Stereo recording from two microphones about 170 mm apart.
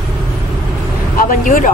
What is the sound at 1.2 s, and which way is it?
Speech, 55° left (ahead or behind).